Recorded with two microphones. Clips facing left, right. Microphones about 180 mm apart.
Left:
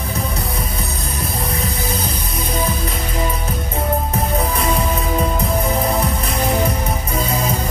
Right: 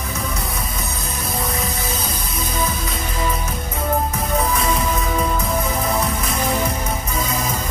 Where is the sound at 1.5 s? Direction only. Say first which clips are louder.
Left 2 dB; 30° left (ahead or behind).